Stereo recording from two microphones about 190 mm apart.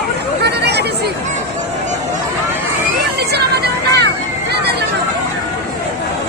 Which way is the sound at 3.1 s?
60° right (ahead or behind).